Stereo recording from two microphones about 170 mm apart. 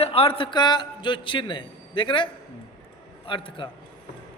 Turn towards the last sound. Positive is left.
turn(degrees=30)  # may be behind; listen again after turning